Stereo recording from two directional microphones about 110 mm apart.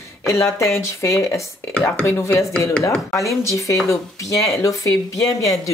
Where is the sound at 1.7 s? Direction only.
15° left (ahead or behind).